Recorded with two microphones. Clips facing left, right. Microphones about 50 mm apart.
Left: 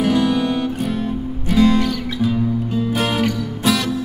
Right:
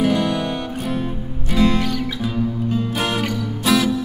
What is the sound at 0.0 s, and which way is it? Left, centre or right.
Music, centre.